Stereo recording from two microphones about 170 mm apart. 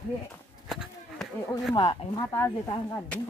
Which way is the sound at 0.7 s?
Centre (ahead or behind).